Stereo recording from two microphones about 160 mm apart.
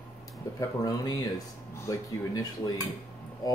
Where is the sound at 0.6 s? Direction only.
25° left (ahead or behind).